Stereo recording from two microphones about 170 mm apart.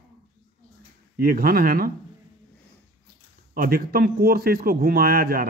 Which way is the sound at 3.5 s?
60° right (ahead or behind).